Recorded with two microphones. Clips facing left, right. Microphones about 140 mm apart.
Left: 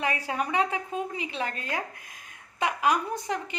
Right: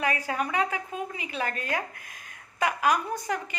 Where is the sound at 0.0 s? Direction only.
25° left (ahead or behind).